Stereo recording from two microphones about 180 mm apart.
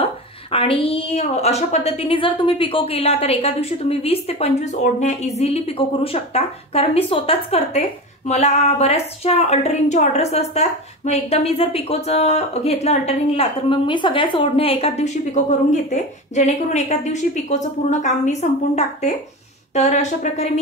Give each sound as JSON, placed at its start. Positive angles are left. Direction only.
{"t": 0.0, "sound": "a woman's voice", "side_deg": 30}